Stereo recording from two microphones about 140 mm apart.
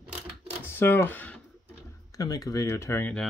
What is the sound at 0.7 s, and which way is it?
Speech, 15° left (ahead or behind).